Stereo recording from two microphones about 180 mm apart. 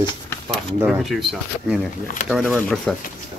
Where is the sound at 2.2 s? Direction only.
45° left (ahead or behind).